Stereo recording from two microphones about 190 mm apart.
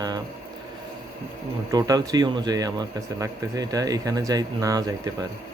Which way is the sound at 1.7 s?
20° right (ahead or behind).